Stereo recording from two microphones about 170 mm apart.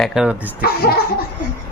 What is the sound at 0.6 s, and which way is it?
Laughter, 65° left (ahead or behind).